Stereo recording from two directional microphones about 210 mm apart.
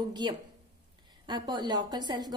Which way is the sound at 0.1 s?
20° right (ahead or behind).